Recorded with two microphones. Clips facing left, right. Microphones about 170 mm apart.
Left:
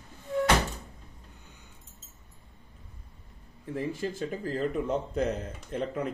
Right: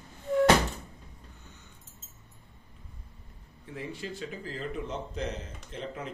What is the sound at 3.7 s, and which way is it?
Speech, 45° left (ahead or behind).